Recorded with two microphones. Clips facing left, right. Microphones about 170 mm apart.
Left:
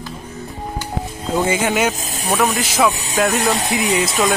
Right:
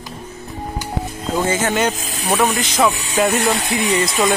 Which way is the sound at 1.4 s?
10° left (ahead or behind).